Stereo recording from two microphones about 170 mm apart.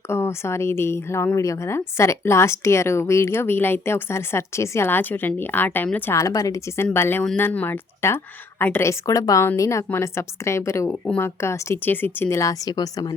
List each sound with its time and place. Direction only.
0.1 s a woman's voice: 15° left (ahead or behind)